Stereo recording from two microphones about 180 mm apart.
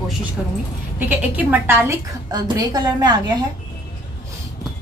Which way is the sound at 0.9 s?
10° right (ahead or behind).